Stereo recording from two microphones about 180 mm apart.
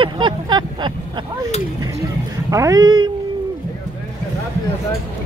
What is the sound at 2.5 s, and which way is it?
Speech, 20° right (ahead or behind).